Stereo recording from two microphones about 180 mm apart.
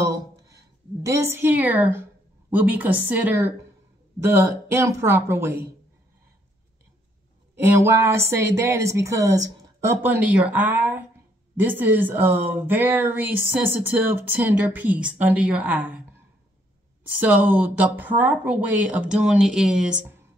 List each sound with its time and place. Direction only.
0.0 s a sound: 15° right (ahead or behind)
1.0 s speech: 15° right (ahead or behind)
7.5 s speech: 15° right (ahead or behind)